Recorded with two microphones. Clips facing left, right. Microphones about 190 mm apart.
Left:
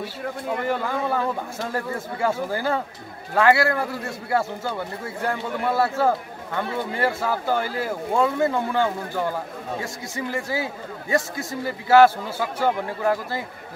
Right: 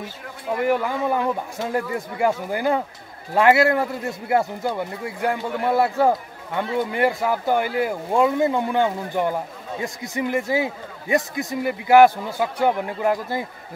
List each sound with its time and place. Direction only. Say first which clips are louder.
0.7 s a man's voice: right 4 dB; 15° right (ahead or behind)